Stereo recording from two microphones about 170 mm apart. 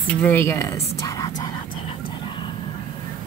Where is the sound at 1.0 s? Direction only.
20° left (ahead or behind).